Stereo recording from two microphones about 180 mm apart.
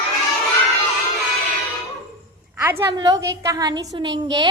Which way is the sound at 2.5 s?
10° right (ahead or behind).